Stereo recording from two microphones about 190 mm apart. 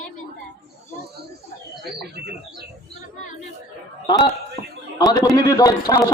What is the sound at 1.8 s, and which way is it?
Speech, 55° right (ahead or behind).